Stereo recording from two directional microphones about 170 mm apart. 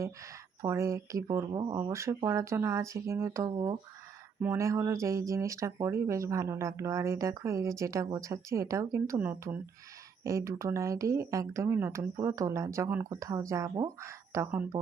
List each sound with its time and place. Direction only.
0.0 s speech: 20° right (ahead or behind)